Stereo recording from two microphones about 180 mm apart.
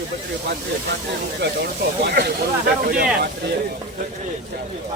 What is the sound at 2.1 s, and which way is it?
Speech, 65° right (ahead or behind).